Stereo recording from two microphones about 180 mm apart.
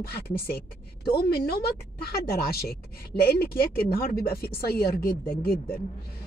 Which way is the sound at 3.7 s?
55° left (ahead or behind).